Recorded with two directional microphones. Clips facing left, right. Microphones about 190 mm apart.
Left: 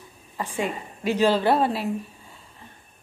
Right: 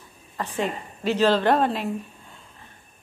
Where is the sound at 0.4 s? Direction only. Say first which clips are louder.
Right 1 dB; 10° left (ahead or behind).